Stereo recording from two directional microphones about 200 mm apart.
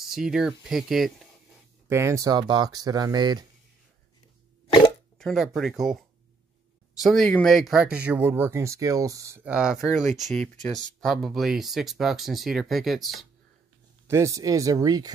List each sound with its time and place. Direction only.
0.0 s speech: 5° right (ahead or behind)
1.9 s speech: 15° right (ahead or behind)
5.2 s speech: centre (ahead or behind)
10.0 s speech: 35° right (ahead or behind)
10.3 s speech: 5° left (ahead or behind)
14.0 s speech: 15° right (ahead or behind)